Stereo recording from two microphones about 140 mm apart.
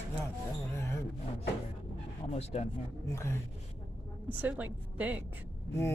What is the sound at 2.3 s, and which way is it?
Speech, 50° left (ahead or behind).